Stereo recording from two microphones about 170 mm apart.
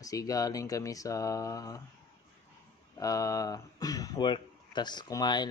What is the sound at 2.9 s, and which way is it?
Speech, 20° left (ahead or behind).